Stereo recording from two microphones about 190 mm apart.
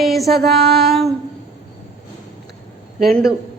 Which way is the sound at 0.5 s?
55° right (ahead or behind).